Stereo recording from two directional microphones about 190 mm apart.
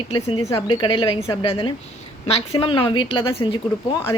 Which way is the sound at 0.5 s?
25° left (ahead or behind).